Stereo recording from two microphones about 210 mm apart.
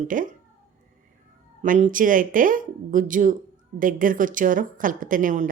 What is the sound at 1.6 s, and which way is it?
Speech, 35° right (ahead or behind).